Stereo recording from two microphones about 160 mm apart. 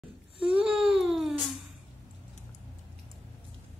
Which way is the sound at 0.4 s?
5° right (ahead or behind).